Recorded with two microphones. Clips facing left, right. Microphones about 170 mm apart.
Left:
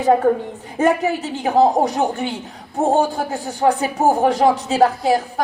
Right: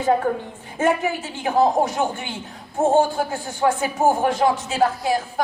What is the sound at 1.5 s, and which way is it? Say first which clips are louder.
Speech: left 3 dB; 35° left (ahead or behind).